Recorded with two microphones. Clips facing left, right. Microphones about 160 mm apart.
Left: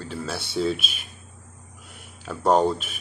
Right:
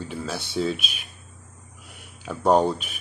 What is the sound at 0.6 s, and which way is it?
Speech, 5° right (ahead or behind).